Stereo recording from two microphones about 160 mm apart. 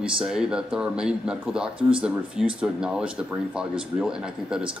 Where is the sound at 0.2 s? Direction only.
5° right (ahead or behind).